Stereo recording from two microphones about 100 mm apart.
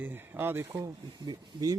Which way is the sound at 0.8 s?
40° right (ahead or behind).